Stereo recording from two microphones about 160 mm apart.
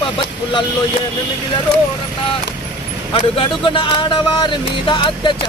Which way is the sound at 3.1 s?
35° left (ahead or behind).